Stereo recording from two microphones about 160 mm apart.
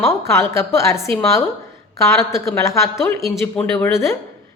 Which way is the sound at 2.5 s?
20° left (ahead or behind).